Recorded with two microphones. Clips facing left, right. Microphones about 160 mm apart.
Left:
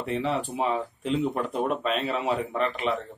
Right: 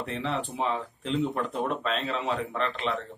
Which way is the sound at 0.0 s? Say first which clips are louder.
Left 4 dB; 5° left (ahead or behind).